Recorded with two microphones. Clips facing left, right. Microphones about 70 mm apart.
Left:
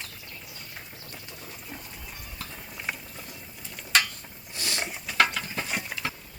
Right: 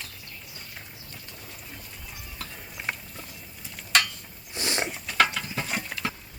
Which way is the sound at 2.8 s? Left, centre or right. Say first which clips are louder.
Right 2 dB; centre.